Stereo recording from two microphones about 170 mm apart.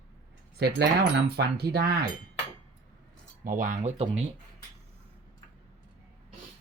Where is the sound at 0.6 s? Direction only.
70° right (ahead or behind).